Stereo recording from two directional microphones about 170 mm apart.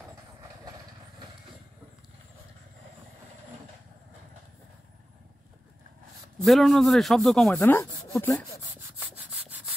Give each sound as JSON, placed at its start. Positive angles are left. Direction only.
{"t": 6.4, "sound": "a man's voice", "side_deg": 0}
{"t": 7.6, "sound": "speech", "side_deg": 15}
{"t": 9.0, "sound": "wood", "side_deg": -10}